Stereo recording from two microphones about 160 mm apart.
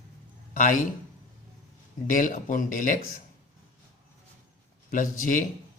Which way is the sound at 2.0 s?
55° left (ahead or behind).